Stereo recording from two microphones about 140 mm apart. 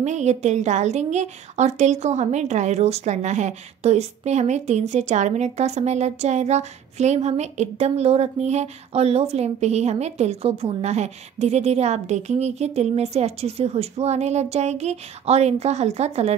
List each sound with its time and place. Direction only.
0.0 s a woman's voice: 55° right (ahead or behind)